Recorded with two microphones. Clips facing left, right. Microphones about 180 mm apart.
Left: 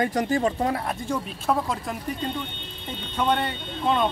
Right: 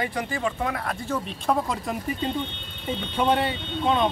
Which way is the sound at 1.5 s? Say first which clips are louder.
Even; centre (ahead or behind).